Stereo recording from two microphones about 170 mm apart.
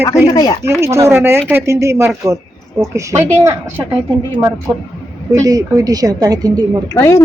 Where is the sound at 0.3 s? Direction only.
25° left (ahead or behind).